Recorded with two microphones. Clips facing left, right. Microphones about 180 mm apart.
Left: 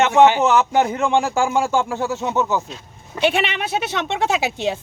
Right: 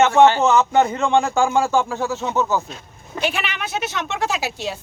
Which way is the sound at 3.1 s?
25° left (ahead or behind).